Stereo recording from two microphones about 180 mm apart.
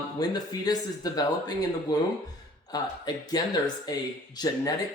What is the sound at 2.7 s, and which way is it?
Speech, 20° left (ahead or behind).